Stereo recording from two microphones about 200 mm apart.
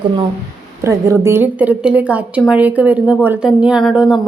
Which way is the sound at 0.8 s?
15° right (ahead or behind).